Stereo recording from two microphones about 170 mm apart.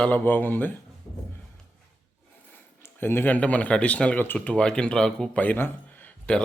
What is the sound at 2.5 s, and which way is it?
Speech, 15° left (ahead or behind).